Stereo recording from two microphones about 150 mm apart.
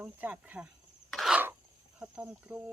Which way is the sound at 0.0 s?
10° right (ahead or behind).